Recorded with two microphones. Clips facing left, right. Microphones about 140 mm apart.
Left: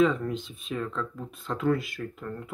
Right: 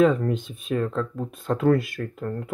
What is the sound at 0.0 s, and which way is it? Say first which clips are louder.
Speech: right 4 dB; 50° right (ahead or behind).